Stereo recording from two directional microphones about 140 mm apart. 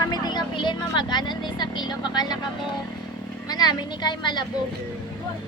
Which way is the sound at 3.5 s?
30° left (ahead or behind).